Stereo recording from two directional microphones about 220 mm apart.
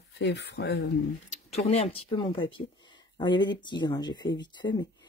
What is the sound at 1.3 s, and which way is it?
Speech, 30° left (ahead or behind).